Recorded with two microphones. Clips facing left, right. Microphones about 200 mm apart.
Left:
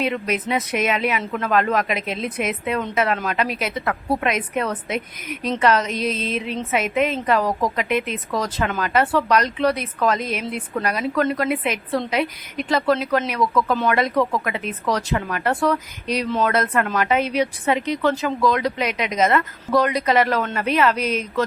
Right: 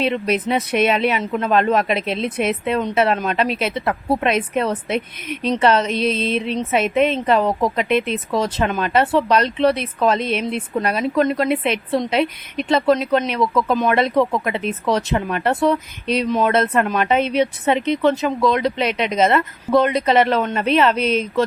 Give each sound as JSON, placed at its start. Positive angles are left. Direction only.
{"t": 0.0, "sound": "a woman's voice", "side_deg": -30}